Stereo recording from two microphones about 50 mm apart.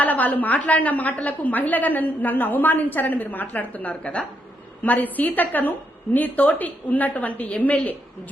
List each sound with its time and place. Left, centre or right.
0.0 s a woman's voice: left